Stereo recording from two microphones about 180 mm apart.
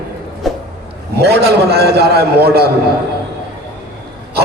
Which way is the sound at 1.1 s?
65° right (ahead or behind).